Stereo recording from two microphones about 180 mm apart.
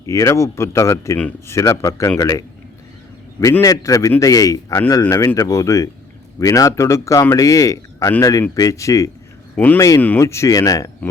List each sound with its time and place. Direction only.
0.0 s speech: 15° left (ahead or behind)
3.4 s speech: 20° left (ahead or behind)